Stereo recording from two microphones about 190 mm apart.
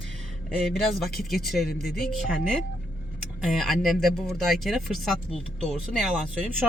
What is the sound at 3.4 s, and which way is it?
Speech, centre (ahead or behind).